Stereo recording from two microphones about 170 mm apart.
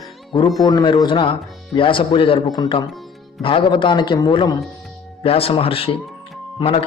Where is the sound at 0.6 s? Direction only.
20° left (ahead or behind).